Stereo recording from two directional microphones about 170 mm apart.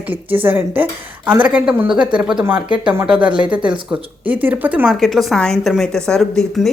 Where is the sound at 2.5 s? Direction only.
30° right (ahead or behind).